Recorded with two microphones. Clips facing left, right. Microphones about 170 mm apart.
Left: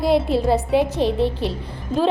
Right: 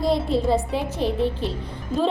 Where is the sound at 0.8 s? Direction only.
85° left.